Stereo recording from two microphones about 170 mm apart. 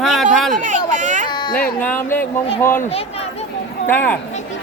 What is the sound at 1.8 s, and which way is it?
Speech, 10° left (ahead or behind).